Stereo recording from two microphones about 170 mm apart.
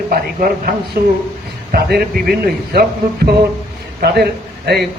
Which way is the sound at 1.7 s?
65° right (ahead or behind).